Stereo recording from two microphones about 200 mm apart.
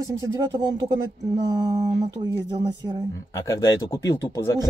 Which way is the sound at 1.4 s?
20° right (ahead or behind).